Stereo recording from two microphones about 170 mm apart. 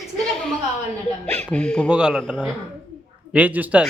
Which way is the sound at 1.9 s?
5° right (ahead or behind).